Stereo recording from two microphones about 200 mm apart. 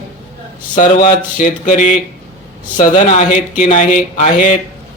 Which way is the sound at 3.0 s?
40° left (ahead or behind).